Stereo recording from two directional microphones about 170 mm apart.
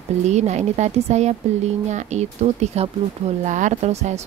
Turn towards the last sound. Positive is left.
turn(degrees=-40)  # may be behind; listen again after turning